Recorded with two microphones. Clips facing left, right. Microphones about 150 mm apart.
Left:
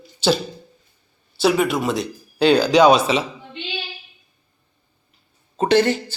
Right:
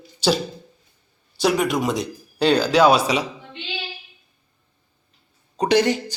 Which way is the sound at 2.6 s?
5° right (ahead or behind).